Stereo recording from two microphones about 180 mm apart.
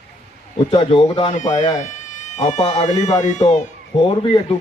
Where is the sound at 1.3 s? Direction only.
40° left (ahead or behind).